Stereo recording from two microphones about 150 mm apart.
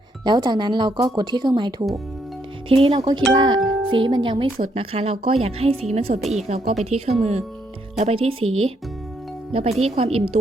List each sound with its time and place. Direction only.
0.3 s speech: 30° right (ahead or behind); by 10.1 s 45° right (ahead or behind)